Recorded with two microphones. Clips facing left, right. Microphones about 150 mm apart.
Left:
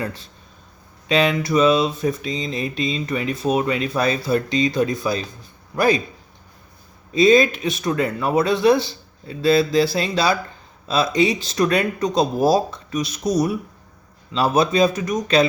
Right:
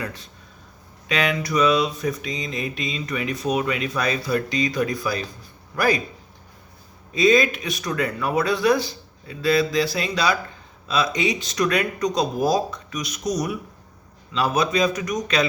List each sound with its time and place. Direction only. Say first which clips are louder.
0.0 s a man's voice: left 4 dB; 30° left (ahead or behind)
7.1 s speech: left 4 dB; 30° left (ahead or behind)